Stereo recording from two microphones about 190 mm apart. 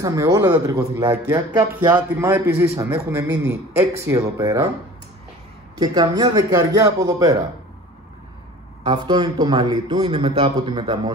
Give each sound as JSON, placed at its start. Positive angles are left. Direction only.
{"t": 0.0, "sound": "a man's voice", "side_deg": -20}
{"t": 5.8, "sound": "a man's voice", "side_deg": -20}
{"t": 8.8, "sound": "a man's voice", "side_deg": -25}
{"t": 10.0, "sound": "a man's voice", "side_deg": -30}